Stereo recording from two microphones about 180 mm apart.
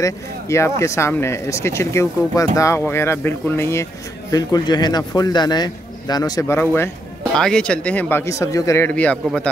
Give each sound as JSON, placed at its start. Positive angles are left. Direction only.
{"t": 0.0, "sound": "speech", "side_deg": 15}